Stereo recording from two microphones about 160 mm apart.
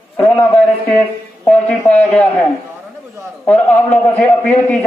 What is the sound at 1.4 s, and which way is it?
Speech, 5° left (ahead or behind).